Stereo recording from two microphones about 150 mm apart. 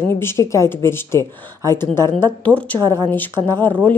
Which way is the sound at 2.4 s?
10° left (ahead or behind).